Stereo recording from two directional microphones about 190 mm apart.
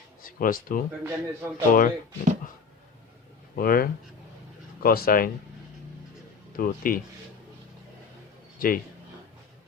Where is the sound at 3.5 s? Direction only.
50° left (ahead or behind).